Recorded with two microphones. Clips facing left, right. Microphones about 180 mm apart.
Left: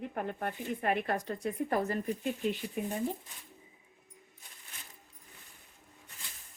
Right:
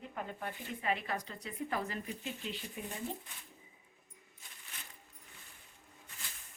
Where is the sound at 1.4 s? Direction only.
45° left (ahead or behind).